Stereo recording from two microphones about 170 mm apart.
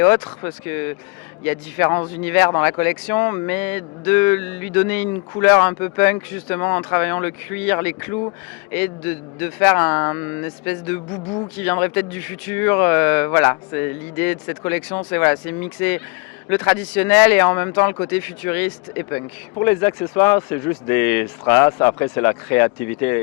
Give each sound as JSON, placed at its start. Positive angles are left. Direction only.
{"t": 0.3, "sound": "speech", "side_deg": 15}